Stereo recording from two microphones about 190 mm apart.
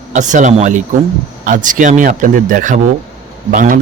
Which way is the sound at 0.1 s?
40° right (ahead or behind).